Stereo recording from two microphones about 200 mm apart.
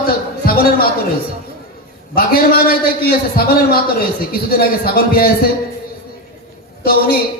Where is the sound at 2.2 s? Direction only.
45° left (ahead or behind).